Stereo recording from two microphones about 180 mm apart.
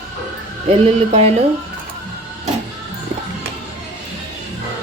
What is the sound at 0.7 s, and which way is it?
Speech, 35° right (ahead or behind).